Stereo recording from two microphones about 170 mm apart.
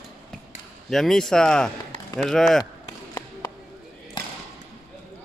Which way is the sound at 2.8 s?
20° left (ahead or behind).